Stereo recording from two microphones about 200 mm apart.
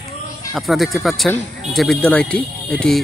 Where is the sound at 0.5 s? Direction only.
Centre (ahead or behind).